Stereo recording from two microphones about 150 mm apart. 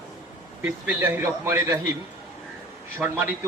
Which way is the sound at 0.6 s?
10° right (ahead or behind).